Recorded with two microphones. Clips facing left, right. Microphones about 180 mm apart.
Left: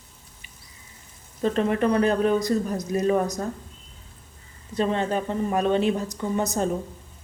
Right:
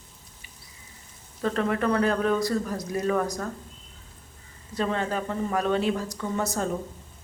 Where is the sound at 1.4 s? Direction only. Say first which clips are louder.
Left 3 dB; 20° left (ahead or behind).